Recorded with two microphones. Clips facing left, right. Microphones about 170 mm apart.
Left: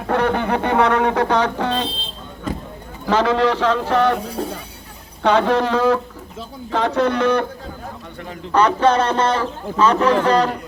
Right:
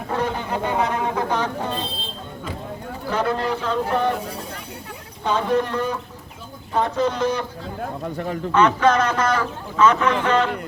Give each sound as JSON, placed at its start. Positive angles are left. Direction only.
{"t": 0.1, "sound": "speech", "side_deg": 70}
{"t": 3.1, "sound": "speech", "side_deg": 90}
{"t": 5.2, "sound": "speech", "side_deg": 80}
{"t": 8.5, "sound": "a man's voice", "side_deg": 35}